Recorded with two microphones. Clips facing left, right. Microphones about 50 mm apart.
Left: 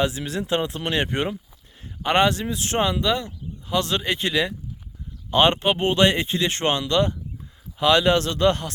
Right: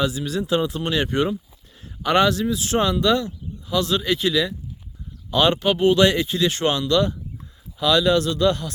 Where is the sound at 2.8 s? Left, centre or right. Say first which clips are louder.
Right 2 dB; left.